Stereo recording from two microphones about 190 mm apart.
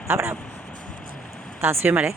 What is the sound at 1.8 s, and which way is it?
Speech, 10° right (ahead or behind).